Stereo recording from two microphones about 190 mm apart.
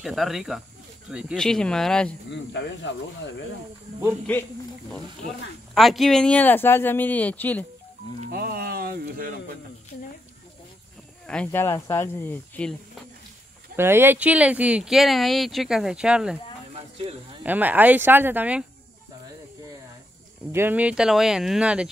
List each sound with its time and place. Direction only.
0.0 s speech: centre (ahead or behind)
2.2 s speech: 70° left (ahead or behind)
4.3 s speech: 5° left (ahead or behind)
5.8 s speech: centre (ahead or behind)
8.3 s a sound: 50° right (ahead or behind)
11.2 s speech: 10° left (ahead or behind)
13.7 s speech: 10° right (ahead or behind)
17.4 s speech: 10° right (ahead or behind)
20.5 s speech: 10° right (ahead or behind)